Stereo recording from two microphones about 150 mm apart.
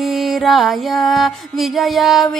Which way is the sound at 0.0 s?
Centre (ahead or behind).